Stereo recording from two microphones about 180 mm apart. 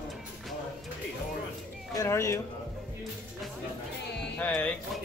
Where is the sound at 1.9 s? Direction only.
15° left (ahead or behind).